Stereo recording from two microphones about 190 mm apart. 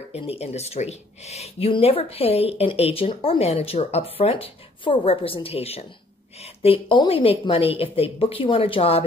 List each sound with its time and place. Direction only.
0.1 s a woman's voice: 30° left (ahead or behind)